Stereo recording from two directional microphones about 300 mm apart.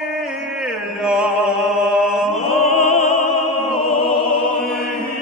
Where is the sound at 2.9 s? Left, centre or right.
Left.